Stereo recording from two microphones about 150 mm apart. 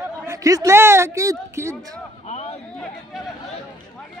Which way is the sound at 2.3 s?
45° left (ahead or behind).